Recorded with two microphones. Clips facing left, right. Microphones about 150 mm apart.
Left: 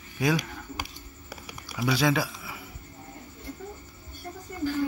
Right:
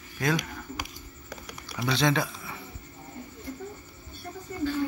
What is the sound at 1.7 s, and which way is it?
Speech, 5° left (ahead or behind).